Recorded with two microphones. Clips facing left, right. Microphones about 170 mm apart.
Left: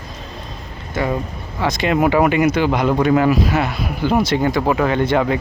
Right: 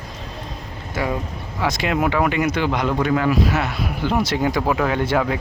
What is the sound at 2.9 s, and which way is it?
Speech, 25° left (ahead or behind).